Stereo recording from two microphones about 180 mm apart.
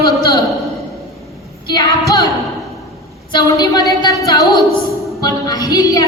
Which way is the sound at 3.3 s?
20° left (ahead or behind).